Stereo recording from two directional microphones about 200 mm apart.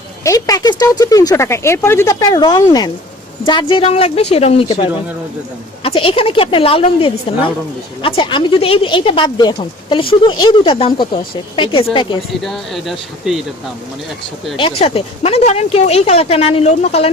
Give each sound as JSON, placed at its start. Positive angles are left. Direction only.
{"t": 0.3, "sound": "speech", "side_deg": 20}
{"t": 12.4, "sound": "speech", "side_deg": 0}
{"t": 14.8, "sound": "speech", "side_deg": 30}